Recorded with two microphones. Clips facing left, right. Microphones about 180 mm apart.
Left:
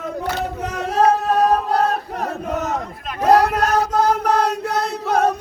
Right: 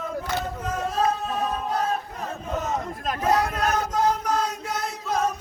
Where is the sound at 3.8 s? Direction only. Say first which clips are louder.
Left 6 dB; 70° left (ahead or behind).